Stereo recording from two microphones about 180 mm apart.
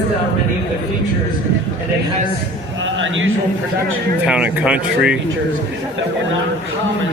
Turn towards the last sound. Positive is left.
turn(degrees=-5)  # may be behind; listen again after turning